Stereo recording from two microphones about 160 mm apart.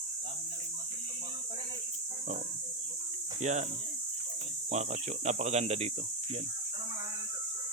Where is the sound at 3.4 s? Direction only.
45° right (ahead or behind).